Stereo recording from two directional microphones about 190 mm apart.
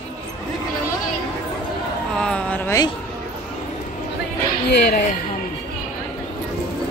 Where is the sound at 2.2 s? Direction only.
5° left (ahead or behind).